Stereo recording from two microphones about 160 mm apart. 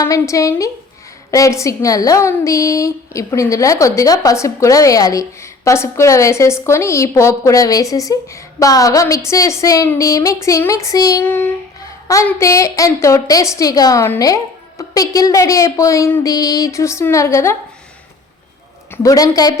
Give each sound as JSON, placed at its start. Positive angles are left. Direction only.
{"t": 0.0, "sound": "a woman's voice", "side_deg": 20}
{"t": 18.9, "sound": "a woman's voice", "side_deg": 20}